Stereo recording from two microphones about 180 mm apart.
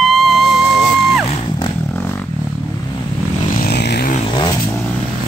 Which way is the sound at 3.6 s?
65° left (ahead or behind).